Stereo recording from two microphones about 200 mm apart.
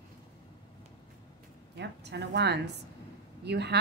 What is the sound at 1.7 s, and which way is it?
A woman's voice, 60° right (ahead or behind).